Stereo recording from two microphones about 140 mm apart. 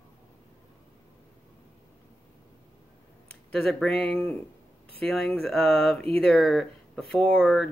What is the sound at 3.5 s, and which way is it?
Speech, 5° left (ahead or behind).